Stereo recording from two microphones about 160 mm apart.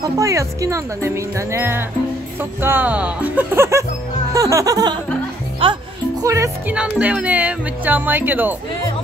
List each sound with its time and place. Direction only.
0.0 s speech: 20° right (ahead or behind)
5.6 s music: 35° right (ahead or behind)
6.2 s speech: 20° right (ahead or behind)